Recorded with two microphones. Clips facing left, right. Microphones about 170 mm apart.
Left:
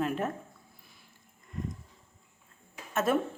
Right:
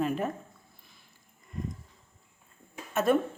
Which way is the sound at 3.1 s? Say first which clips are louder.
Right 3 dB; centre (ahead or behind).